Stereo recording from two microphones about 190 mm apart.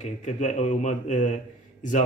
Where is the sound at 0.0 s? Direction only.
40° left (ahead or behind).